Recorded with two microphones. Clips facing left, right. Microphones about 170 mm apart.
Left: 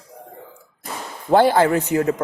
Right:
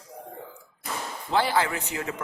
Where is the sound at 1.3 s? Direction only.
50° left (ahead or behind).